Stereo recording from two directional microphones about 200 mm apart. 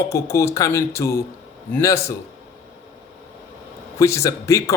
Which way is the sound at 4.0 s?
15° left (ahead or behind).